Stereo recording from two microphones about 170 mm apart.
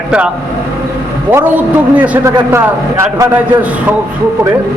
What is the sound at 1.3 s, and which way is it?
A man's voice, 10° right (ahead or behind).